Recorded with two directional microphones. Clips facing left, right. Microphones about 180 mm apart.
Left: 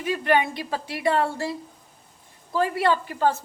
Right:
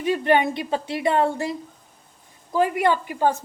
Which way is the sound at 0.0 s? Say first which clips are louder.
Right 3 dB; 25° right (ahead or behind).